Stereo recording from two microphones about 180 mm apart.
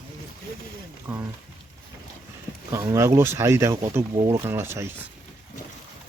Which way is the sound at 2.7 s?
15° right (ahead or behind).